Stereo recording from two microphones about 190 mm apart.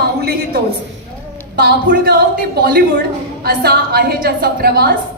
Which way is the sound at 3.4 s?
55° right (ahead or behind).